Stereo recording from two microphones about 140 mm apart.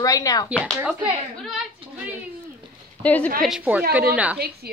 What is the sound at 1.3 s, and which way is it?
Speech, centre (ahead or behind).